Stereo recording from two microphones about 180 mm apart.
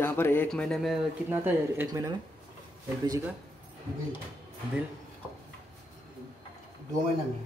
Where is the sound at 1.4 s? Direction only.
15° right (ahead or behind).